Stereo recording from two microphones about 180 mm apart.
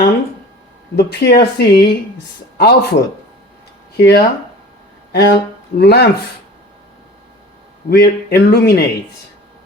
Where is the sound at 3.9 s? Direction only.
65° left (ahead or behind).